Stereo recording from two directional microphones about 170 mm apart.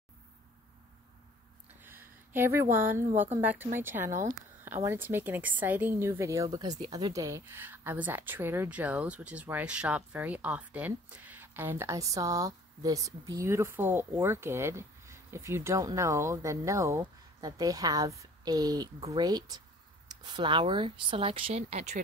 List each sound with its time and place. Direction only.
1.8 s a sound: 10° right (ahead or behind)
3.3 s a woman's voice: 10° right (ahead or behind)
18.9 s speech: 35° right (ahead or behind)
19.2 s speech: 25° right (ahead or behind); by 22.0 s 45° right (ahead or behind)